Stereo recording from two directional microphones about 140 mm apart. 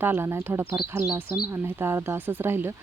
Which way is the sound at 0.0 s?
15° right (ahead or behind).